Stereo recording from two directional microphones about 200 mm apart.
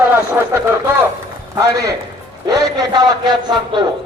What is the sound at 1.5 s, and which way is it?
A man's voice, 15° right (ahead or behind).